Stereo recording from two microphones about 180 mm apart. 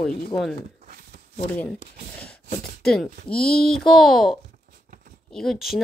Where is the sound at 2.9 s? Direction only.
5° left (ahead or behind).